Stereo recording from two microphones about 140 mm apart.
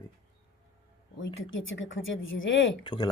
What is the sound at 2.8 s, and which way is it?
Speech, 30° left (ahead or behind).